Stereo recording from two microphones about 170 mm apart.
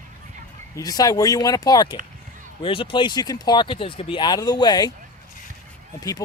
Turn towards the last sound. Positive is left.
turn(degrees=20)  # may be behind; listen again after turning